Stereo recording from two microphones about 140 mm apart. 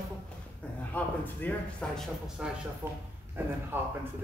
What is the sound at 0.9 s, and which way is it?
Speech, 10° left (ahead or behind).